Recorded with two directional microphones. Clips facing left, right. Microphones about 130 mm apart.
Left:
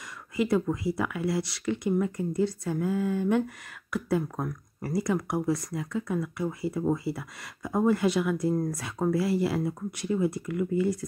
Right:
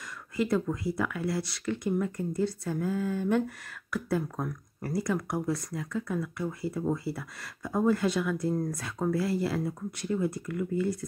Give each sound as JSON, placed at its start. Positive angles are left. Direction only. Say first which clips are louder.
{"t": 0.4, "sound": "speech", "louder": "left 2 dB", "side_deg": 20}